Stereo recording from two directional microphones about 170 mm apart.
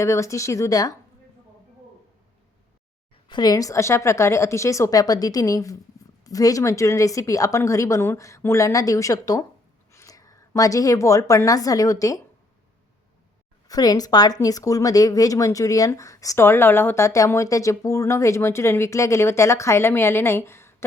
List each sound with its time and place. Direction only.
0.0 s speech: 15° left (ahead or behind)
3.2 s a woman's voice: 25° left (ahead or behind)
13.7 s speech: 20° left (ahead or behind)